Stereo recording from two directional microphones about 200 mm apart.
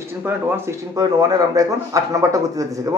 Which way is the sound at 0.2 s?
15° right (ahead or behind).